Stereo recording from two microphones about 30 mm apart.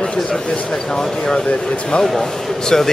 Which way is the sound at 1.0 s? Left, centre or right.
Centre.